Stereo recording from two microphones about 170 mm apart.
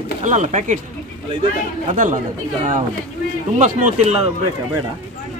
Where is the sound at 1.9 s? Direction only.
50° right (ahead or behind).